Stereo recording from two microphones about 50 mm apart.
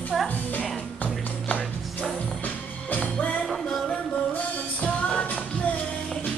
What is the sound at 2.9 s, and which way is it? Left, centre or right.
Music, left.